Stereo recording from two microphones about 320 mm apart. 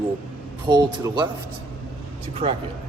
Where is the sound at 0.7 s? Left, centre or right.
Centre.